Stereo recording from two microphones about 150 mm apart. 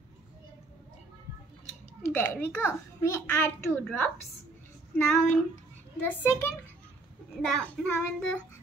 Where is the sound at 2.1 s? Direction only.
15° left (ahead or behind).